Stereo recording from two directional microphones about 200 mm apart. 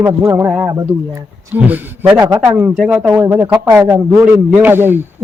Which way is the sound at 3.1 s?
15° right (ahead or behind).